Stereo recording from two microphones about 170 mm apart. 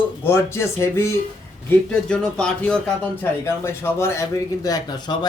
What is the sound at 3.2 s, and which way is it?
A man's voice, 15° left (ahead or behind).